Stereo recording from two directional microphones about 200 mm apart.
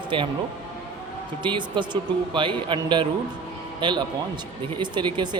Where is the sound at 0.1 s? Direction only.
25° right (ahead or behind).